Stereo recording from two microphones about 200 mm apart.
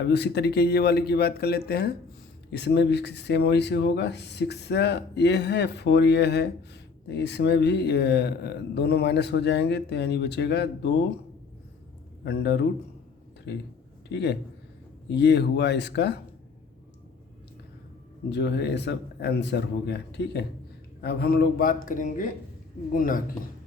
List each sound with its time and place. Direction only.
0.1 s speech: 55° left (ahead or behind)
12.2 s speech: 55° left (ahead or behind)
14.1 s speech: 60° left (ahead or behind)
18.3 s speech: 60° left (ahead or behind)